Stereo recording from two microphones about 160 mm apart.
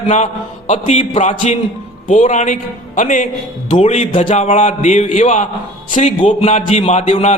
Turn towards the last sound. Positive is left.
turn(degrees=45)  # may be behind; listen again after turning